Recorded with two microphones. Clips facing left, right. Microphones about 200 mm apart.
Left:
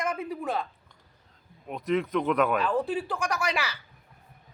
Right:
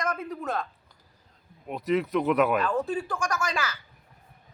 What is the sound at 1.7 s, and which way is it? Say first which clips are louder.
Speech: right 1 dB; 5° right (ahead or behind).